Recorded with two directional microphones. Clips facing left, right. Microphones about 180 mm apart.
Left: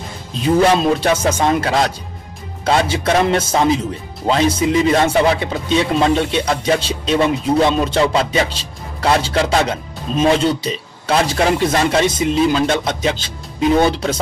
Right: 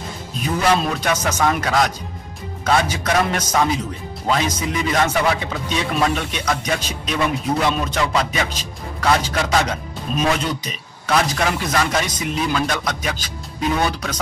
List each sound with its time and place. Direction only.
0.4 s music: 25° left (ahead or behind)